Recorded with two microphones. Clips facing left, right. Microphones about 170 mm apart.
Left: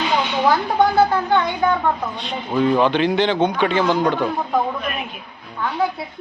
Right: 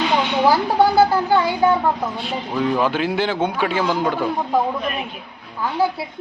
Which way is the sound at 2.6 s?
5° right (ahead or behind).